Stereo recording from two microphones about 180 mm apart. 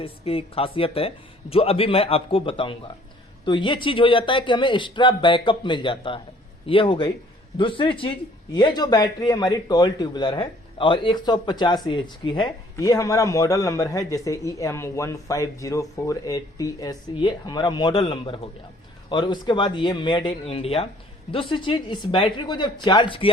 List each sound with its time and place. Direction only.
0.0 s a man's voice: 30° left (ahead or behind)